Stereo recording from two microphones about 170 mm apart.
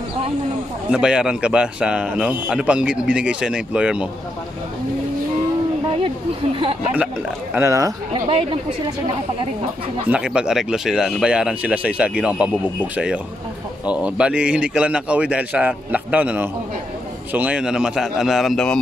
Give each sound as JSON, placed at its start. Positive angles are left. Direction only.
{"t": 0.9, "sound": "a man's voice", "side_deg": -5}
{"t": 6.0, "sound": "speech", "side_deg": -30}
{"t": 7.5, "sound": "speech", "side_deg": -15}
{"t": 8.1, "sound": "speech", "side_deg": -35}
{"t": 10.0, "sound": "a man's voice", "side_deg": -5}